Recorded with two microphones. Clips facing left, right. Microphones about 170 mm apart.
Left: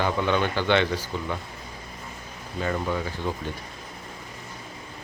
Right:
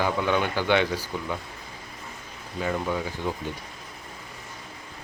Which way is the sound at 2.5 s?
5° right (ahead or behind).